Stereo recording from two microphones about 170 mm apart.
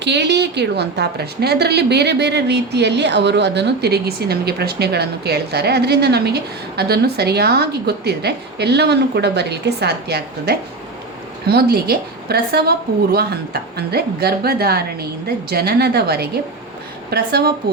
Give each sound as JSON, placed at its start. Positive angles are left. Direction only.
{"t": 0.0, "sound": "a woman's voice", "side_deg": -90}